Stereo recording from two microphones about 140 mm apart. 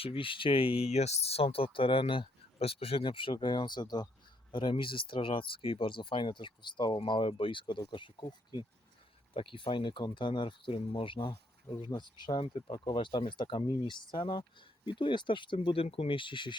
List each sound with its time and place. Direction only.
0.0 s speech: 40° left (ahead or behind)